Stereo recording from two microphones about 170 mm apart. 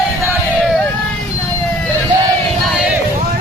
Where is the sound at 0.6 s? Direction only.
10° left (ahead or behind).